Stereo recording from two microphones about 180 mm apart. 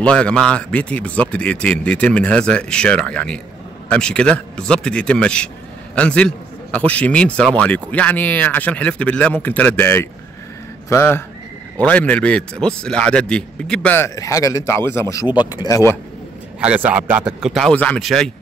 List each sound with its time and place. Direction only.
0.0 s a man's voice: 5° left (ahead or behind)
16.6 s a man's voice: 5° right (ahead or behind)